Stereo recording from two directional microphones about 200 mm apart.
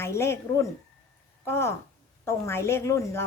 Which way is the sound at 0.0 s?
15° left (ahead or behind).